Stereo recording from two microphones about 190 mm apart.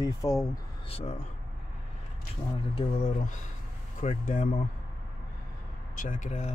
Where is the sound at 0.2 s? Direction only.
30° left (ahead or behind).